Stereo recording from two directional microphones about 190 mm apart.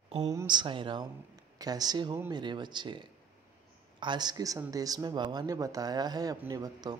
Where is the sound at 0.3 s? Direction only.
20° right (ahead or behind).